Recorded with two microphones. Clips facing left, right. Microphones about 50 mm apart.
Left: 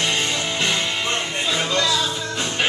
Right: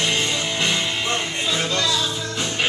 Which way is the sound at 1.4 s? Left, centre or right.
Centre.